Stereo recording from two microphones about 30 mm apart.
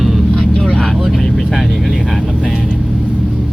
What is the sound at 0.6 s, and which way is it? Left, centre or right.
Vehicle, left.